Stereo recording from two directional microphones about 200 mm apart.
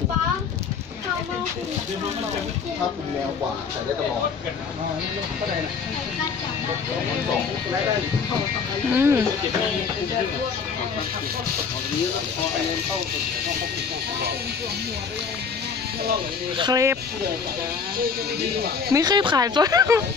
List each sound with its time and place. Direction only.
8.9 s speech: 10° right (ahead or behind)
16.5 s speech: 20° right (ahead or behind)
18.9 s speech: 20° right (ahead or behind)